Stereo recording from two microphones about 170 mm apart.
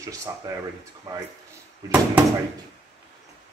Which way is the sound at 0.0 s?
20° right (ahead or behind).